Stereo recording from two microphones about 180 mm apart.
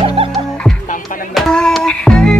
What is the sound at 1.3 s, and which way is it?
Music, centre (ahead or behind).